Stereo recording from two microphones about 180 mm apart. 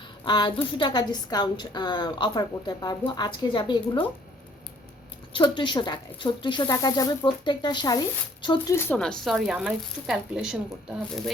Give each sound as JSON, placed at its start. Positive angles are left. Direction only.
{"t": 0.3, "sound": "speech", "side_deg": 25}
{"t": 5.3, "sound": "speech", "side_deg": 25}
{"t": 8.7, "sound": "speech", "side_deg": 10}